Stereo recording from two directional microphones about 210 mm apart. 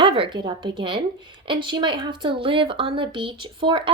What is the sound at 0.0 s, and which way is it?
A woman's voice, 25° right (ahead or behind).